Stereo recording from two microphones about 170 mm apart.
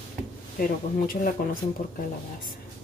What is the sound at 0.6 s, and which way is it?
Speech, 55° left (ahead or behind).